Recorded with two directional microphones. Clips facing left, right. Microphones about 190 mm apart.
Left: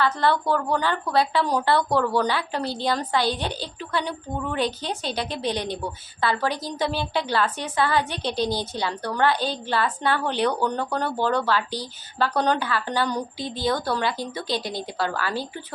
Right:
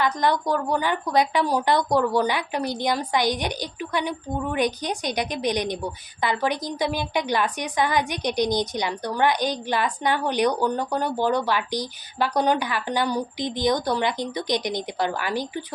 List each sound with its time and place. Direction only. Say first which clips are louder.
0.0 s a woman's voice: even; 15° right (ahead or behind)